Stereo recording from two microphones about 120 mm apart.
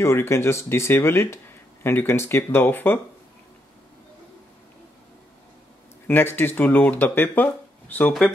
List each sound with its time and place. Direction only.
0.0 s speech: 20° left (ahead or behind)
6.0 s speech: 15° left (ahead or behind)